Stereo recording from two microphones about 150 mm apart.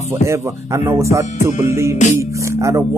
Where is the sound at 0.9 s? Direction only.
20° right (ahead or behind).